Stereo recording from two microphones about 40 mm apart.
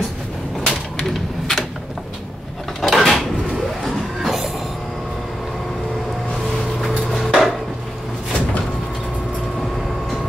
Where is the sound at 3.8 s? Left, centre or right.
Centre.